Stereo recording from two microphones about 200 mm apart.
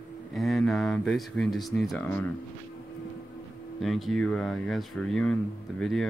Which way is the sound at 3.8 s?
Centre (ahead or behind).